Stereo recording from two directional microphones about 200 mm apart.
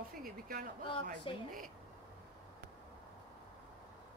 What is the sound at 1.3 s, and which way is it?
Speech, 25° left (ahead or behind).